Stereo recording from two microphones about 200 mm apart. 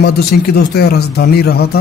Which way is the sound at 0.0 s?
50° left (ahead or behind).